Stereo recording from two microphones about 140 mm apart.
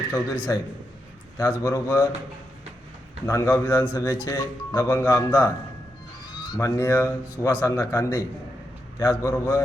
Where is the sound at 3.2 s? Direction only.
20° left (ahead or behind).